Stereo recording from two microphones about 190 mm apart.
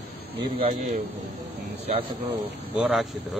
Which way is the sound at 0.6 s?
35° right (ahead or behind).